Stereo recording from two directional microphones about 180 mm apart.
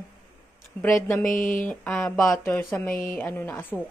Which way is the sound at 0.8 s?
15° left (ahead or behind).